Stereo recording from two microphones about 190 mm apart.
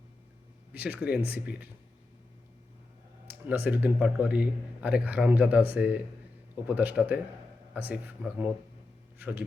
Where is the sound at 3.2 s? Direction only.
10° right (ahead or behind).